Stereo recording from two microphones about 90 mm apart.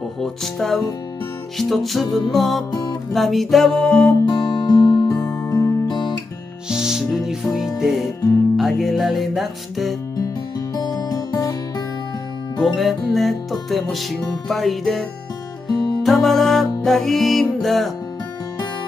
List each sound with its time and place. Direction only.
0.2 s music: 5° left (ahead or behind)
4.3 s music: 45° left (ahead or behind)
5.5 s music: 35° left (ahead or behind)
5.9 s guitar: 55° left (ahead or behind)
6.7 s music: 5° right (ahead or behind)
10.1 s music: 45° left (ahead or behind)
12.6 s music: centre (ahead or behind)
15.7 s music: 55° left (ahead or behind)
16.0 s music: centre (ahead or behind)